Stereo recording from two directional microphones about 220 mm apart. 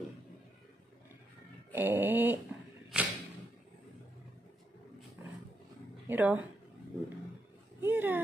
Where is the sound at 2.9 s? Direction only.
5° right (ahead or behind).